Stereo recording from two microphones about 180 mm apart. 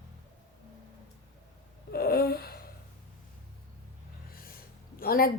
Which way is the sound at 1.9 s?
60° left (ahead or behind).